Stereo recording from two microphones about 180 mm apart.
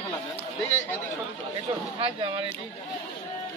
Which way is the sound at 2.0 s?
30° right (ahead or behind).